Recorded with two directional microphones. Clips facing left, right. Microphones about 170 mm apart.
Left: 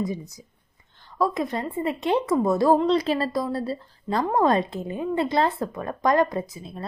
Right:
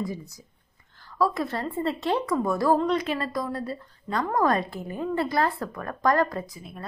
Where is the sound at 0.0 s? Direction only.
20° left (ahead or behind).